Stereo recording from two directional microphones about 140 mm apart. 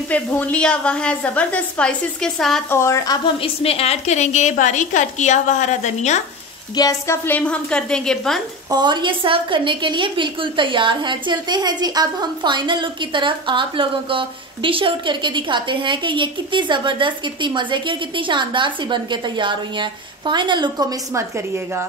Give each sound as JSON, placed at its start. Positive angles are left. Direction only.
{"t": 0.1, "sound": "a woman's voice", "side_deg": 10}
{"t": 2.7, "sound": "speech", "side_deg": 20}
{"t": 3.3, "sound": "a woman's voice", "side_deg": 45}
{"t": 6.7, "sound": "a woman's voice", "side_deg": 25}
{"t": 8.6, "sound": "a woman's voice", "side_deg": -30}